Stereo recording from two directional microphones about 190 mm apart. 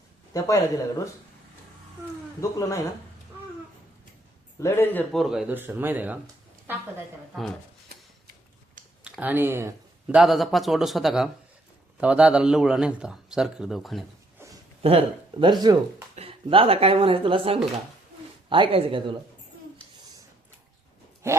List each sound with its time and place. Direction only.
0.3 s speech: 15° left (ahead or behind)
2.4 s speech: 15° left (ahead or behind)
4.6 s a man's voice: 10° left (ahead or behind); by 6.8 s 10° right (ahead or behind)
7.9 s a sound: 50° right (ahead or behind)
9.0 s a man's voice: 5° right (ahead or behind)
14.3 s a sound: 15° right (ahead or behind)
14.8 s speech: 30° right (ahead or behind)
21.2 s a woman's voice: 15° right (ahead or behind)